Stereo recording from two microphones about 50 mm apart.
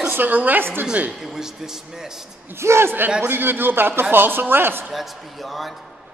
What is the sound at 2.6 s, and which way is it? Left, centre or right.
A man's voice, right.